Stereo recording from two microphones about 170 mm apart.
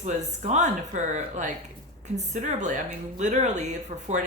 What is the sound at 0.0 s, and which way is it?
A woman's voice, 45° right (ahead or behind).